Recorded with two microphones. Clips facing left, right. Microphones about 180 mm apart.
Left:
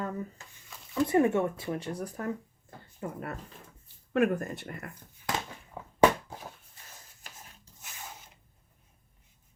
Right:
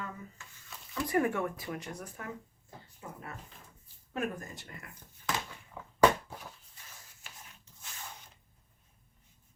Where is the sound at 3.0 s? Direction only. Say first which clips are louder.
Left 9 dB; 60° left (ahead or behind).